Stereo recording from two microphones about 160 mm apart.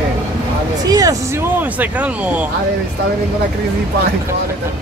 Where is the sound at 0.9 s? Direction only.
20° right (ahead or behind).